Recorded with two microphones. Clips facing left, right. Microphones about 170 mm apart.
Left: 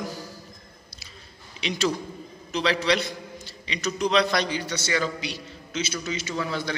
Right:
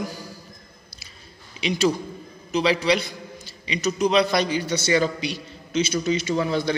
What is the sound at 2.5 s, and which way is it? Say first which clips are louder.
A man's voice: right 3 dB; 5° right (ahead or behind).